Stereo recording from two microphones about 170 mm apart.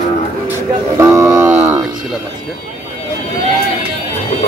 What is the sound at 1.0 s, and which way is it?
Speech, 20° right (ahead or behind).